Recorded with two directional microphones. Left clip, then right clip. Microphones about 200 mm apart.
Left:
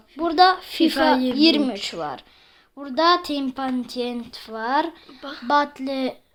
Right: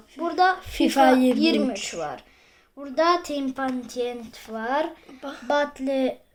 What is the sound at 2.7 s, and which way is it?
A woman's voice, 50° left (ahead or behind).